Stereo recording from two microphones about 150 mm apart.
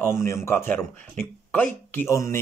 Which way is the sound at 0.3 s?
15° left (ahead or behind).